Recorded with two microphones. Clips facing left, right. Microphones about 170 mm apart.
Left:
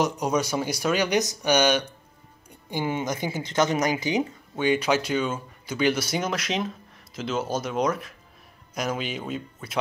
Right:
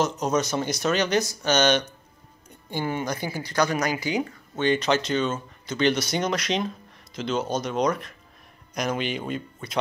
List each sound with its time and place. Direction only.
0.0 s a woman's voice: 15° left (ahead or behind)
4.6 s speech: 10° left (ahead or behind)